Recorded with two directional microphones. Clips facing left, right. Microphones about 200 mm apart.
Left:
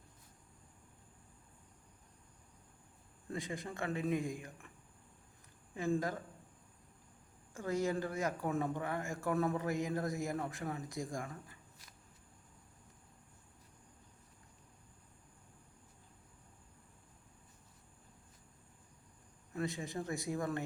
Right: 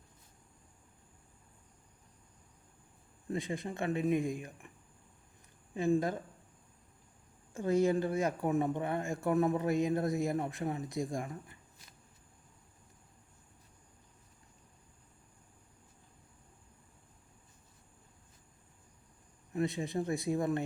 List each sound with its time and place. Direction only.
3.2 s speech: 25° right (ahead or behind)
5.7 s speech: 20° right (ahead or behind)
7.5 s speech: 20° right (ahead or behind)
19.5 s speech: 20° right (ahead or behind)